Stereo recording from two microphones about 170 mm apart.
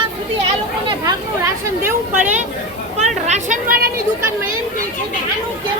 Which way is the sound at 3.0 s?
40° right (ahead or behind).